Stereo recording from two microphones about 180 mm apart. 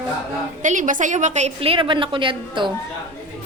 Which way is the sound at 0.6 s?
45° right (ahead or behind).